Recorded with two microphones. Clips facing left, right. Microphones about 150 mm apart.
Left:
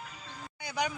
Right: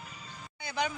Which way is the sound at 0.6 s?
10° left (ahead or behind).